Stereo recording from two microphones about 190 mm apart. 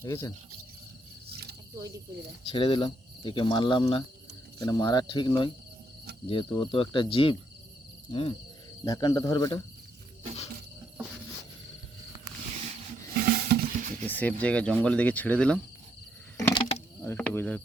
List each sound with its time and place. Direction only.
0.0 s speech: 15° left (ahead or behind)
2.5 s speech: 25° left (ahead or behind)
13.5 s music: 40° right (ahead or behind)
14.1 s a sound: 10° left (ahead or behind)
14.4 s speech: 5° left (ahead or behind)
16.4 s a sound: 15° left (ahead or behind)
17.0 s speech: 10° left (ahead or behind)